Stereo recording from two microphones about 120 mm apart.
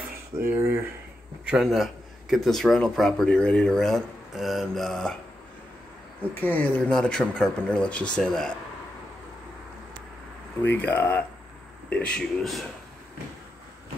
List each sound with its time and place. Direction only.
0.5 s speech: 20° right (ahead or behind)
1.4 s a man's voice: 5° right (ahead or behind)
6.4 s a man's voice: 15° left (ahead or behind)
10.6 s speech: 15° left (ahead or behind)